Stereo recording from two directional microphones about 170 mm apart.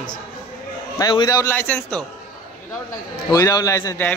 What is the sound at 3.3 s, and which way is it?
Speech, 20° left (ahead or behind).